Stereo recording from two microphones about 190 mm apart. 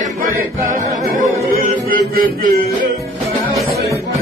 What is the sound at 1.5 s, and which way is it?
Music, 50° right (ahead or behind).